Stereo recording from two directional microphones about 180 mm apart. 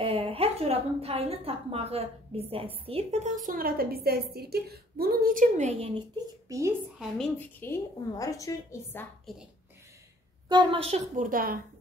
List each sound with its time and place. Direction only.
0.0 s a woman's voice: 35° right (ahead or behind)
6.1 s speech: 15° right (ahead or behind)
7.0 s a woman's voice: 5° left (ahead or behind)
9.3 s a woman's voice: centre (ahead or behind)
10.5 s a woman's voice: 25° right (ahead or behind)
11.1 s a woman's voice: 50° right (ahead or behind)